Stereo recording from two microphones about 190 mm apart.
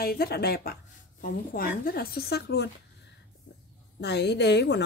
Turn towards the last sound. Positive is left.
turn(degrees=65)  # may be behind; listen again after turning